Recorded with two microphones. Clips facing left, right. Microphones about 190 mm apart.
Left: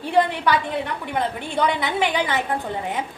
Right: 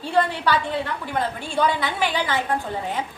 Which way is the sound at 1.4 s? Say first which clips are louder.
Even; 20° left (ahead or behind).